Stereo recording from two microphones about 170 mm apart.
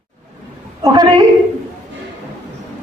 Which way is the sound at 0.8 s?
25° right (ahead or behind).